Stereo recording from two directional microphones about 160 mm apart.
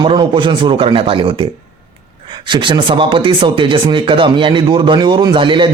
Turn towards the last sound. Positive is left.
turn(degrees=-30)  # may be behind; listen again after turning